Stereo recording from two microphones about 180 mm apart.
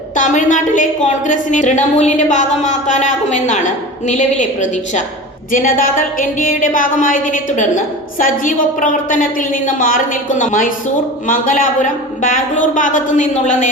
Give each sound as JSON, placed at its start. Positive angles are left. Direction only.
{"t": 0.2, "sound": "a woman's voice", "side_deg": 45}